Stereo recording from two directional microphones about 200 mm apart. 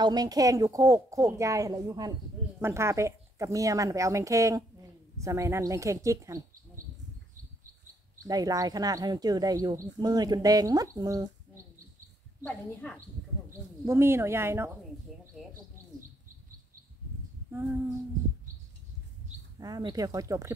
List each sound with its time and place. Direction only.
0.0 s a woman's voice: 20° right (ahead or behind)
8.3 s speech: 20° right (ahead or behind)
12.4 s speech: 5° left (ahead or behind)
13.5 s speech: 15° right (ahead or behind)
17.5 s female singing: 10° right (ahead or behind)
19.6 s a woman's voice: 20° right (ahead or behind)